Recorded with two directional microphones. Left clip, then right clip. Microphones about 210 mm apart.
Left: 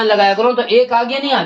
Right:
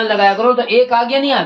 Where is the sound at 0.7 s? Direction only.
20° left (ahead or behind).